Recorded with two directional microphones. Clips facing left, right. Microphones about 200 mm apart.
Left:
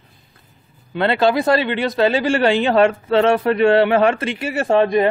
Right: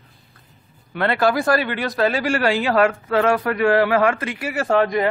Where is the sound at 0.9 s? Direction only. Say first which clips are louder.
Left 3 dB; 25° left (ahead or behind).